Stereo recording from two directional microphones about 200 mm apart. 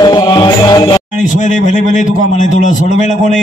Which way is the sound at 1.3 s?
40° left (ahead or behind).